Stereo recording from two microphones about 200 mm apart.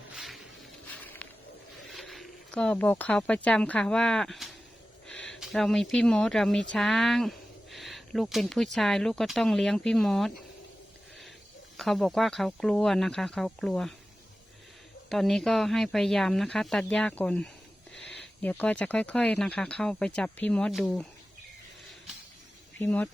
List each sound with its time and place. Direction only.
0.1 s a sound: centre (ahead or behind)
1.9 s speech: centre (ahead or behind)
11.8 s speech: centre (ahead or behind)
15.1 s speech: centre (ahead or behind)
22.8 s speech: 10° left (ahead or behind)